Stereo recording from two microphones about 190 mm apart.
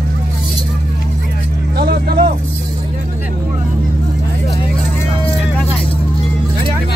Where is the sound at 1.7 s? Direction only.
55° right (ahead or behind).